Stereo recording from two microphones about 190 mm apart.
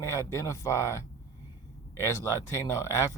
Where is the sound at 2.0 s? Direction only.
15° left (ahead or behind).